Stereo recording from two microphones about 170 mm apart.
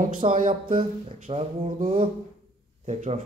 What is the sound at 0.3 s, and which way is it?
A man's voice, 50° right (ahead or behind).